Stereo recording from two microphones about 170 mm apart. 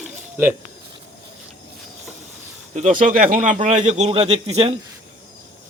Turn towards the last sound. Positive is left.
turn(degrees=-40)  # may be behind; listen again after turning